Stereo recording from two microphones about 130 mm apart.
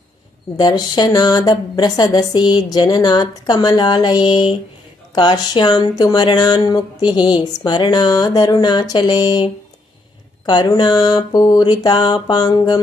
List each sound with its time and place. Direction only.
0.6 s speech: 35° left (ahead or behind)